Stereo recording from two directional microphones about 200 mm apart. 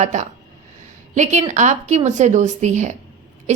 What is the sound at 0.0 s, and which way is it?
A woman's voice, 35° right (ahead or behind).